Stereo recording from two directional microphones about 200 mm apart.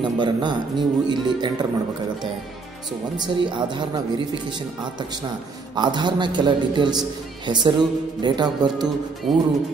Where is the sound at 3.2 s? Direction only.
20° right (ahead or behind).